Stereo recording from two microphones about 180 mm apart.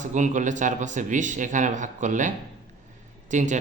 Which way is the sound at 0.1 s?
40° right (ahead or behind).